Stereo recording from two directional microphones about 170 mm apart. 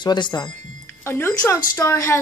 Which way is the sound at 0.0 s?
25° left (ahead or behind).